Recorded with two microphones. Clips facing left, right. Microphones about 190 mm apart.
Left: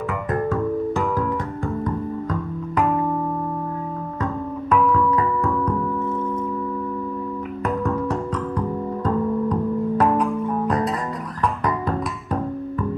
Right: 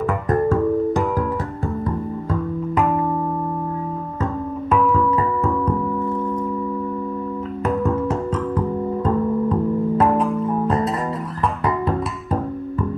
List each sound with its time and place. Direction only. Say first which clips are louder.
7.8 s music: right 2 dB; 5° right (ahead or behind)
9.0 s music: right 1 dB; 25° right (ahead or behind)